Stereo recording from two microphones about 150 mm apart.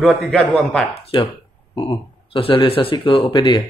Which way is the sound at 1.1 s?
35° left (ahead or behind).